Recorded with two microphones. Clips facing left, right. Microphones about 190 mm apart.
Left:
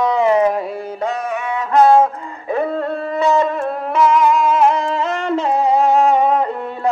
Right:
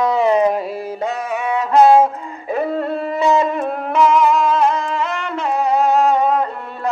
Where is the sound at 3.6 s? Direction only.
5° left (ahead or behind).